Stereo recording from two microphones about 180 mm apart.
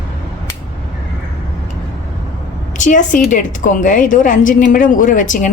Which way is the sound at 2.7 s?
45° left (ahead or behind).